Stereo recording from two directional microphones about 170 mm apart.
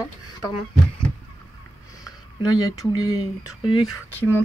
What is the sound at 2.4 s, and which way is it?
Speech, 25° left (ahead or behind).